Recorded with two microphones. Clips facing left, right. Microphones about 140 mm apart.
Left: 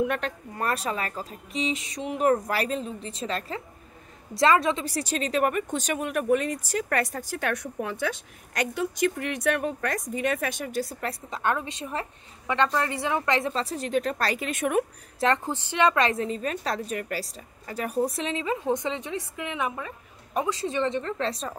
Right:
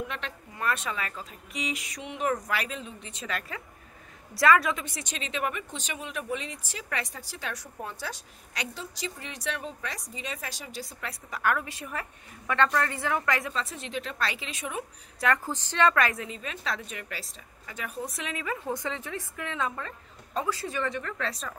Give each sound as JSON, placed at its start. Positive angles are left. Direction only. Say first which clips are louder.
{"t": 0.1, "sound": "a woman's voice", "louder": "left 8 dB", "side_deg": 45}
{"t": 2.0, "sound": "a woman's voice", "louder": "left 6 dB", "side_deg": 40}
{"t": 11.1, "sound": "a woman's voice", "louder": "right 3 dB", "side_deg": 25}
{"t": 13.8, "sound": "speech", "louder": "left 7 dB", "side_deg": 45}
{"t": 15.1, "sound": "a woman's voice", "louder": "left 3 dB", "side_deg": 25}
{"t": 16.3, "sound": "a woman's voice", "louder": "left 6 dB", "side_deg": 45}
{"t": 18.0, "sound": "a woman's voice", "louder": "left 7 dB", "side_deg": 30}